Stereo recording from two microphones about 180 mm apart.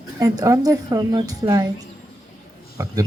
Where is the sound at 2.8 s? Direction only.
20° right (ahead or behind).